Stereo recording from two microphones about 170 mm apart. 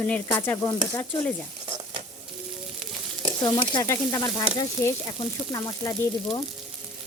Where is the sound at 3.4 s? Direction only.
25° left (ahead or behind).